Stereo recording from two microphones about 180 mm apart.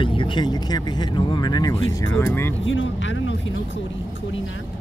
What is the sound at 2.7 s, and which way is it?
Speech, 90° left.